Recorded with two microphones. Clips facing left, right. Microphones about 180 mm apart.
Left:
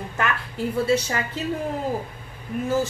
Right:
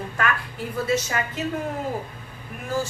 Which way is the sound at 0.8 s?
30° left (ahead or behind).